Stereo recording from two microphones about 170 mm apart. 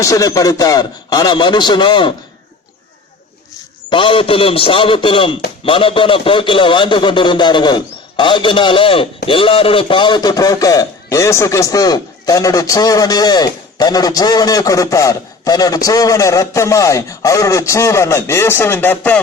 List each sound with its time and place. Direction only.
0.0 s a man's voice: 20° left (ahead or behind)
3.8 s a man's voice: 30° left (ahead or behind); by 19.2 s 10° left (ahead or behind)